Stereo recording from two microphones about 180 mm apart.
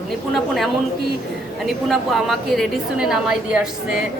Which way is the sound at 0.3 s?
Centre (ahead or behind).